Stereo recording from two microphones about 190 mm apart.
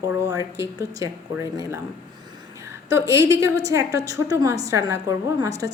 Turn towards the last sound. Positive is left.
turn(degrees=-15)  # may be behind; listen again after turning